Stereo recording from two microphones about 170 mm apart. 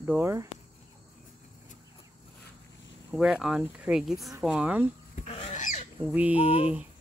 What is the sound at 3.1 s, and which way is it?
Speech, 5° right (ahead or behind).